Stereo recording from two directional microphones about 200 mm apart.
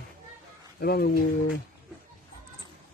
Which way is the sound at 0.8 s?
50° left (ahead or behind).